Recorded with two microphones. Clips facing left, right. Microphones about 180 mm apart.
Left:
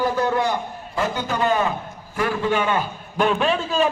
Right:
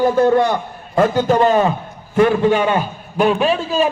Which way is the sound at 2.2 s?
25° right (ahead or behind).